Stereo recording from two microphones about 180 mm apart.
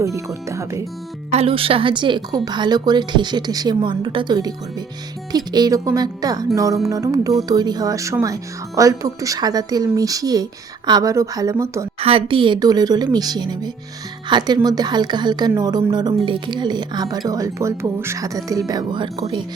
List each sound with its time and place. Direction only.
0.0 s speech: 15° right (ahead or behind)
1.3 s speech: 35° right (ahead or behind); by 11.9 s 15° right (ahead or behind)
11.9 s speech: 30° right (ahead or behind)